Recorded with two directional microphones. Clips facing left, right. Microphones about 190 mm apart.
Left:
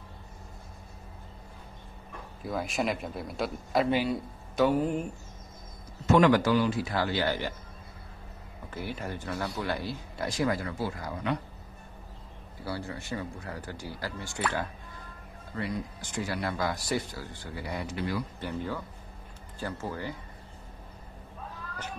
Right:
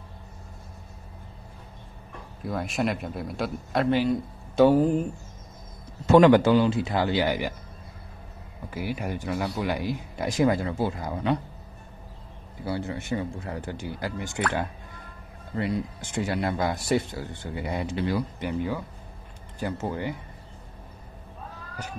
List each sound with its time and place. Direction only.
2.4 s a man's voice: centre (ahead or behind)
4.6 s speech: 35° right (ahead or behind)
6.1 s speech: 25° right (ahead or behind)
8.6 s speech: 10° right (ahead or behind)
12.6 s speech: 20° right (ahead or behind)
15.5 s speech: 25° right (ahead or behind)
18.4 s speech: 15° right (ahead or behind)